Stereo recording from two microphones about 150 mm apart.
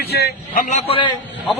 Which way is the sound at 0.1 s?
90° left.